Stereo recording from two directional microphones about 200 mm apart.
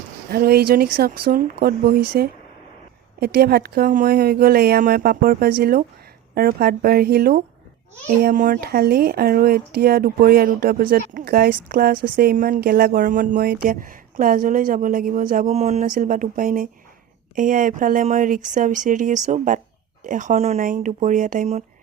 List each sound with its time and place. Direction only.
0.3 s speech: 50° right (ahead or behind)